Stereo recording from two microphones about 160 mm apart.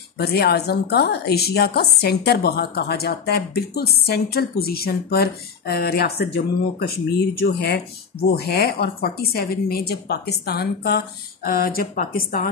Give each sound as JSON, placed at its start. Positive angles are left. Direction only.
{"t": 0.2, "sound": "a woman's voice", "side_deg": 85}
{"t": 7.3, "sound": "a woman's voice", "side_deg": 90}